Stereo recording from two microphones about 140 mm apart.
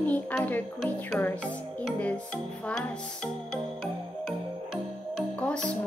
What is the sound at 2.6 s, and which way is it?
Speech, 5° left (ahead or behind).